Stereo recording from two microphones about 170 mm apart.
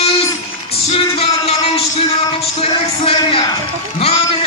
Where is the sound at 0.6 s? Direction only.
35° left (ahead or behind).